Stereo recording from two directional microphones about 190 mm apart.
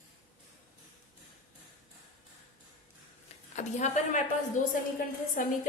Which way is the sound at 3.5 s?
40° left (ahead or behind).